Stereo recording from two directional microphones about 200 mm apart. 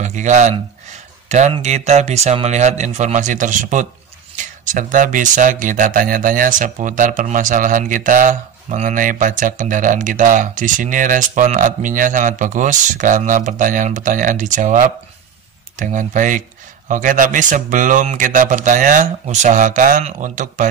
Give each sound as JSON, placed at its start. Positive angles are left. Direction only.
{"t": 0.0, "sound": "speech", "side_deg": -35}